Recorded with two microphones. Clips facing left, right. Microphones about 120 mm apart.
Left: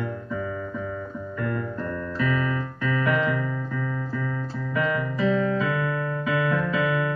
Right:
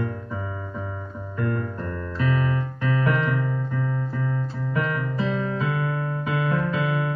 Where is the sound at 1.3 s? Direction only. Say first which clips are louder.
Right 2 dB; 35° right (ahead or behind).